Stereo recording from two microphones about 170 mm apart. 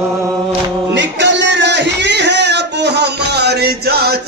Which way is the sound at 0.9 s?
90° right.